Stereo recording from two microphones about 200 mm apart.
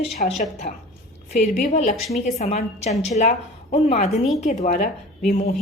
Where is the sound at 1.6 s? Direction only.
35° left (ahead or behind).